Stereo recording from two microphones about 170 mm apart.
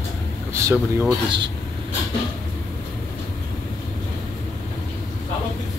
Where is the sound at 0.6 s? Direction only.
10° right (ahead or behind).